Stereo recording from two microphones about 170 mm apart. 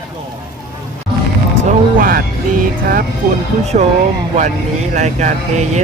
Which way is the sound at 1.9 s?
55° right (ahead or behind).